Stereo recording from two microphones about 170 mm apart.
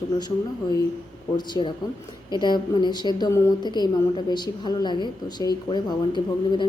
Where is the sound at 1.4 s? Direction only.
25° left (ahead or behind).